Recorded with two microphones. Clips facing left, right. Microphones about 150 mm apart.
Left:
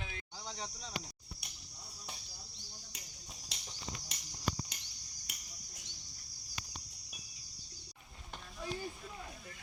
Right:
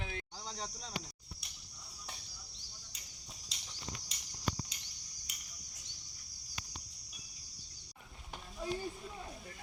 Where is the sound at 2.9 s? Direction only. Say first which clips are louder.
Left 5 dB; 55° left (ahead or behind).